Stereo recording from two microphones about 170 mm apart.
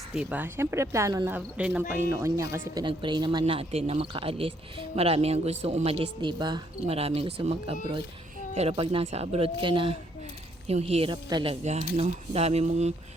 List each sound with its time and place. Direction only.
0.1 s speech: 5° right (ahead or behind)
2.8 s speech: 30° right (ahead or behind)
11.6 s speech: 40° right (ahead or behind)